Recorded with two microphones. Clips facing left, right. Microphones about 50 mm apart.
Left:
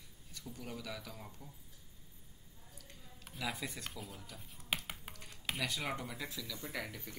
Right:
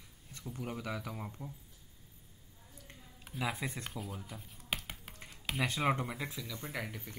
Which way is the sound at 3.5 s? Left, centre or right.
Right.